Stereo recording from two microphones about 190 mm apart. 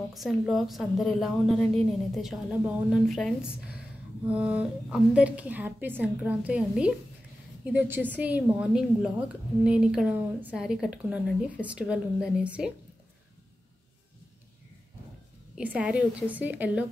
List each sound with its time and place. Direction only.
0.1 s a woman's voice: centre (ahead or behind)
15.5 s a woman's voice: 5° right (ahead or behind)